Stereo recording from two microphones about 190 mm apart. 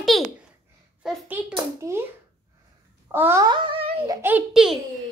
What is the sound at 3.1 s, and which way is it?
Speech, 10° right (ahead or behind).